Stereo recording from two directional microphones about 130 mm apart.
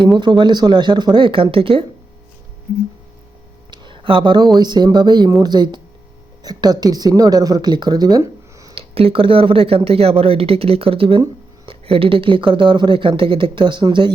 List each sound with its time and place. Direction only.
0.2 s speech: 35° right (ahead or behind)
3.7 s speech: 40° right (ahead or behind)
8.7 s speech: 45° right (ahead or behind)